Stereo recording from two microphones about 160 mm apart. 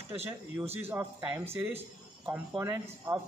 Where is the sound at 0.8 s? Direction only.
15° right (ahead or behind).